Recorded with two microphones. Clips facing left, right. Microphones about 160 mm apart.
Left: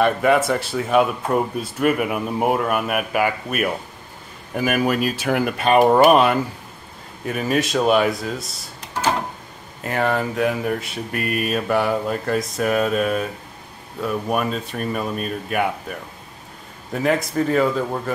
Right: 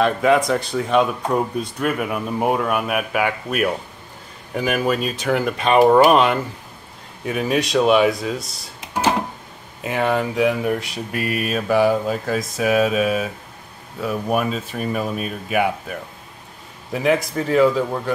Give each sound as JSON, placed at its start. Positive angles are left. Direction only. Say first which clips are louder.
{"t": 0.0, "sound": "speech", "louder": "even", "side_deg": 5}
{"t": 9.8, "sound": "speech", "louder": "right 1 dB", "side_deg": 0}